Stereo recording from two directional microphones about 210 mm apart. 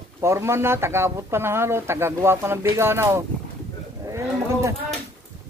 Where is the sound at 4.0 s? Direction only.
15° right (ahead or behind).